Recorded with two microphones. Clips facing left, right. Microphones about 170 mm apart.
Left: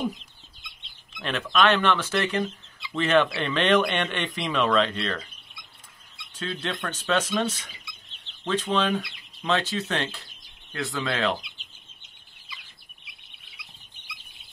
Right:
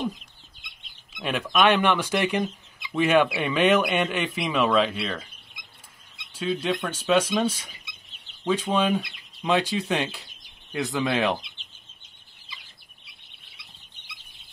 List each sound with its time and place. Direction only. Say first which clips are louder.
0.8 s speech: right 2 dB; 10° right (ahead or behind)
8.1 s chicken: right 2 dB; 10° right (ahead or behind)
9.0 s speech: right 2 dB; 15° right (ahead or behind)